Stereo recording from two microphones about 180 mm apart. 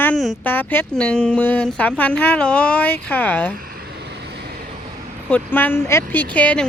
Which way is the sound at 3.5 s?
55° right (ahead or behind).